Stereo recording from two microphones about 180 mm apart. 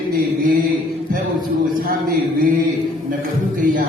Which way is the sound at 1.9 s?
55° right (ahead or behind).